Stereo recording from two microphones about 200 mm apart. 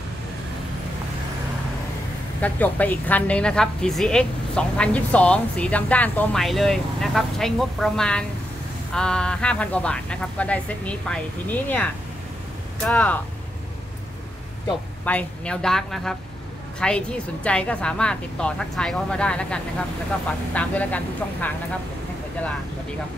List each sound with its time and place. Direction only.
2.4 s a woman's voice: 10° left (ahead or behind)
15.0 s a woman's voice: 5° left (ahead or behind)